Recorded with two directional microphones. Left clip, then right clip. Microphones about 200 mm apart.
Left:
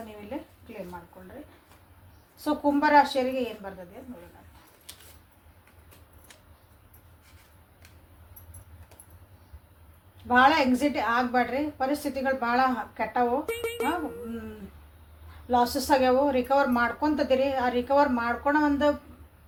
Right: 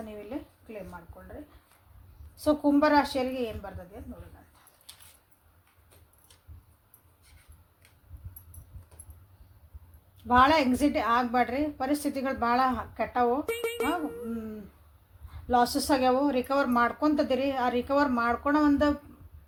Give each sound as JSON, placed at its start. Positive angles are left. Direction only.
{"t": 2.4, "sound": "speech", "side_deg": -55}
{"t": 10.2, "sound": "speech", "side_deg": -55}
{"t": 13.5, "sound": "speech", "side_deg": 0}
{"t": 15.4, "sound": "speech", "side_deg": -50}